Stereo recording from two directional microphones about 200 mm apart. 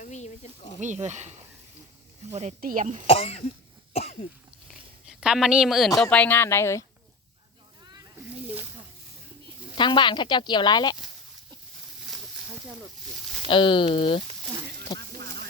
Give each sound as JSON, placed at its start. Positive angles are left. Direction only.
{"t": 0.0, "sound": "snake", "side_deg": 35}
{"t": 0.8, "sound": "speech", "side_deg": -35}
{"t": 3.1, "sound": "speech", "side_deg": 30}
{"t": 3.9, "sound": "cough", "side_deg": 30}
{"t": 5.0, "sound": "speech", "side_deg": -5}
{"t": 9.7, "sound": "speech", "side_deg": 25}
{"t": 13.5, "sound": "speech", "side_deg": 25}
{"t": 14.9, "sound": "music", "side_deg": -55}